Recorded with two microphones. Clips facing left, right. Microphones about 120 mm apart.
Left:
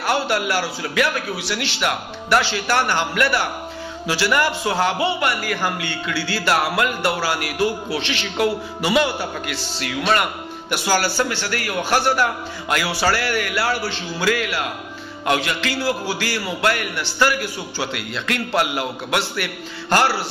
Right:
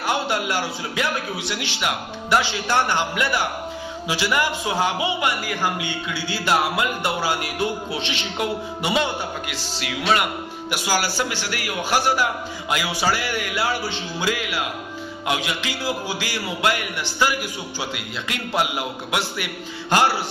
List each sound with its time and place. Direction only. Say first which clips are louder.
0.0 s music: left 2 dB; 20° right (ahead or behind)
1.7 s a man's voice: left 2 dB; 20° right (ahead or behind)
2.5 s music: left 1 dB; 20° right (ahead or behind)
4.1 s a man's voice: left 3 dB; 15° right (ahead or behind)
6.3 s music: left 1 dB; 20° right (ahead or behind)
9.8 s a man's voice: left 1 dB; 5° right (ahead or behind)
13.3 s music: left 3 dB; 20° right (ahead or behind)
15.2 s a man's voice: left 4 dB; 10° right (ahead or behind)
19.3 s music: left 2 dB; 20° right (ahead or behind)